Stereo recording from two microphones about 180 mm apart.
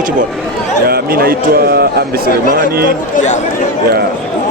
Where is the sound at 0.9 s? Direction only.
55° right (ahead or behind).